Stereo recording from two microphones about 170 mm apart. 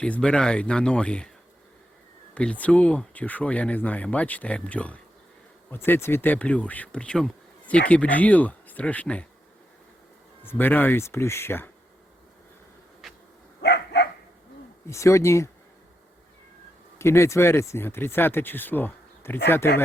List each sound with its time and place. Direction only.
0.0 s speech: 5° left (ahead or behind)
2.3 s speech: 5° left (ahead or behind)
10.4 s speech: 10° left (ahead or behind)
13.6 s dog: 80° left
14.8 s speech: 15° left (ahead or behind)
17.0 s speech: 15° left (ahead or behind)